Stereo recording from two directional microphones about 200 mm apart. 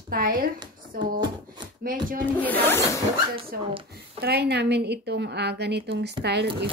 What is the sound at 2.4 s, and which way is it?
Speech, 10° left (ahead or behind).